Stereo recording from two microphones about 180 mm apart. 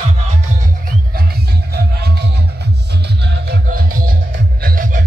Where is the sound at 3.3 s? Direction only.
60° right (ahead or behind).